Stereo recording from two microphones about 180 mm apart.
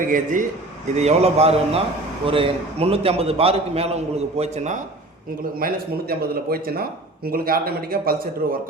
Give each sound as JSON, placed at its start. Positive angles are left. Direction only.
{"t": 0.0, "sound": "a man's voice", "side_deg": -45}
{"t": 0.9, "sound": "a man's voice", "side_deg": -35}
{"t": 5.5, "sound": "speech", "side_deg": -55}